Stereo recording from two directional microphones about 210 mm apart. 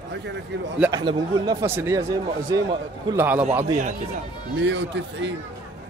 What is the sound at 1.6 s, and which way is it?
Speech, 10° right (ahead or behind).